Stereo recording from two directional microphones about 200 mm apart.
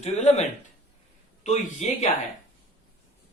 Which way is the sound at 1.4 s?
35° left (ahead or behind).